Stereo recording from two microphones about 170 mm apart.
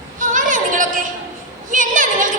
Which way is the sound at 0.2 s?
50° right (ahead or behind).